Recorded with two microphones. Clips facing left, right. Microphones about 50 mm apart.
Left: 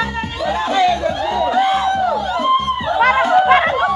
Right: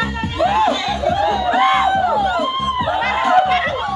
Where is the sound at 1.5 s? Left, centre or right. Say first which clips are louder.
Right 1 dB; right.